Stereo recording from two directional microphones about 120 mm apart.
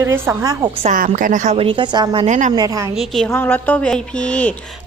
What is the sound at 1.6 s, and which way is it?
Speech, 45° right (ahead or behind).